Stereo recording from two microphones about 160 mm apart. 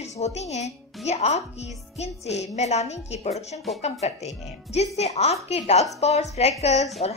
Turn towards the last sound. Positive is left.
turn(degrees=40)  # may be behind; listen again after turning